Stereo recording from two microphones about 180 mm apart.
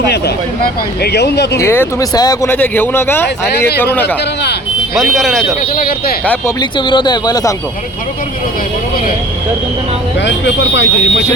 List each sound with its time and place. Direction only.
0.1 s speech: 65° left (ahead or behind)
1.5 s speech: 15° left (ahead or behind)
5.1 s speech: centre (ahead or behind)
6.6 s speech: 25° left (ahead or behind)
10.2 s speech: 80° left